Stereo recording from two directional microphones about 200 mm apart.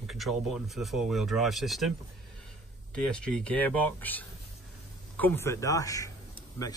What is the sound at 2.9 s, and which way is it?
Speech, 5° left (ahead or behind).